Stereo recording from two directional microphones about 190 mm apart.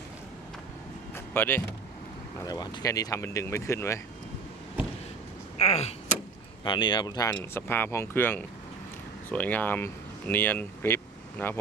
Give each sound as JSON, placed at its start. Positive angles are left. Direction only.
{"t": 1.1, "sound": "a sound", "side_deg": 10}
{"t": 2.4, "sound": "speech", "side_deg": 20}
{"t": 5.5, "sound": "vehicle", "side_deg": 35}
{"t": 6.7, "sound": "speech", "side_deg": 25}